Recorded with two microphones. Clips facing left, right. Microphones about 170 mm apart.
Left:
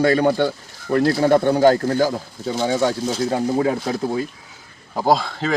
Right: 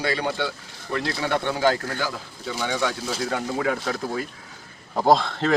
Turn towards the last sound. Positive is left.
turn(degrees=0)  # may be behind; listen again after turning